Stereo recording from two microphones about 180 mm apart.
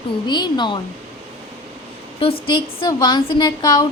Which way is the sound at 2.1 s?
30° left (ahead or behind).